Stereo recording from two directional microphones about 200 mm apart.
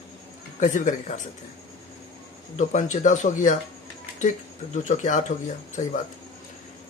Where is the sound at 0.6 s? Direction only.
40° left (ahead or behind).